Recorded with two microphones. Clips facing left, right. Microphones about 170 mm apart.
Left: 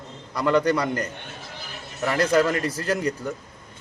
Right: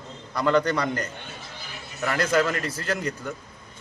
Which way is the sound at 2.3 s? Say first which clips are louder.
Left 3 dB; 15° left (ahead or behind).